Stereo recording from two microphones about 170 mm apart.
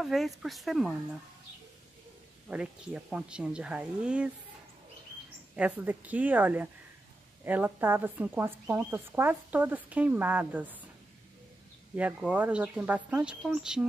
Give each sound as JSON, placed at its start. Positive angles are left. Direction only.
{"t": 0.0, "sound": "speech", "side_deg": 0}
{"t": 2.4, "sound": "speech", "side_deg": -5}
{"t": 5.6, "sound": "speech", "side_deg": -10}
{"t": 11.9, "sound": "speech", "side_deg": -10}